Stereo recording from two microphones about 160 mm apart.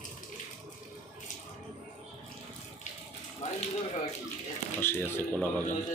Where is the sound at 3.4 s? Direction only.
45° left (ahead or behind).